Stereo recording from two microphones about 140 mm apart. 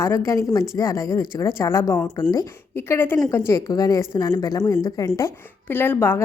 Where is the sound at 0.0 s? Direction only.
20° left (ahead or behind).